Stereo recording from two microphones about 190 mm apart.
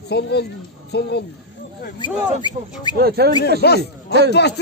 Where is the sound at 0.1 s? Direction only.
60° left (ahead or behind).